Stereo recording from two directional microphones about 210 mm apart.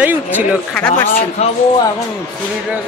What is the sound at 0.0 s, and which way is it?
Speech, 10° right (ahead or behind).